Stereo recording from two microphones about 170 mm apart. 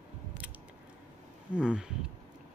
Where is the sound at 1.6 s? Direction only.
5° right (ahead or behind).